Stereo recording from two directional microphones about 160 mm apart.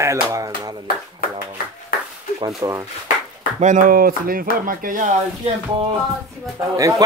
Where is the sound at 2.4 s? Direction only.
20° right (ahead or behind).